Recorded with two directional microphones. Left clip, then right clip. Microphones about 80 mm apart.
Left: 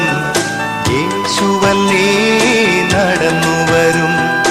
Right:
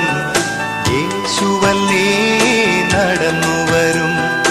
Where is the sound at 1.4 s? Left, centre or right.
Left.